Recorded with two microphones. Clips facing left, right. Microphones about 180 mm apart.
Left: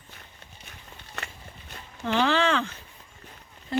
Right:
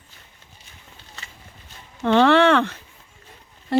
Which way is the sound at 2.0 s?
65° right (ahead or behind).